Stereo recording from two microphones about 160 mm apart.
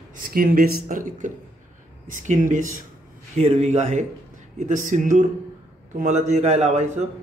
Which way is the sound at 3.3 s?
45° right (ahead or behind).